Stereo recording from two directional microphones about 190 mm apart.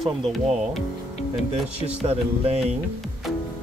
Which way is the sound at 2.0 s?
30° right (ahead or behind).